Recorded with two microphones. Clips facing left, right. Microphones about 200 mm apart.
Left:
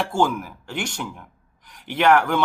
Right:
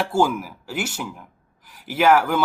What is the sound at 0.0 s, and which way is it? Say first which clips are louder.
Speech: right 1 dB; 5° right (ahead or behind).